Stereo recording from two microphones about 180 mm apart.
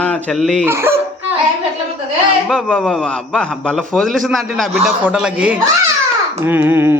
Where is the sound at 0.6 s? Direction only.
15° right (ahead or behind).